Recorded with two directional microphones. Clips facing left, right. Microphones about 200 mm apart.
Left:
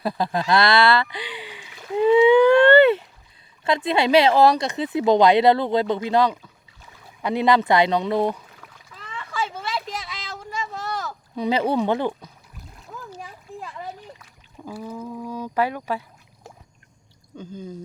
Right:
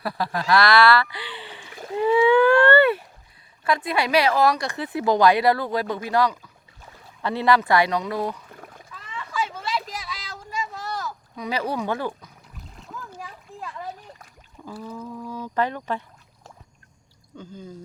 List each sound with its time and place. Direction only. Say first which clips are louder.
0.0 s speech: left 3 dB; 20° left (ahead or behind)
2.0 s a sound: left 3 dB; 20° left (ahead or behind)
3.6 s speech: left 3 dB; 25° left (ahead or behind)
8.4 s rowboat: right 5 dB; 50° right (ahead or behind)
9.3 s a sound: even; 30° left (ahead or behind)
14.6 s speech: left 2 dB; 15° left (ahead or behind)